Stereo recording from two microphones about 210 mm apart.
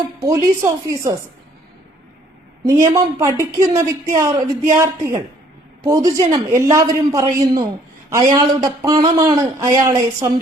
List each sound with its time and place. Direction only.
0.2 s speech: 15° right (ahead or behind)
2.6 s speech: 15° right (ahead or behind)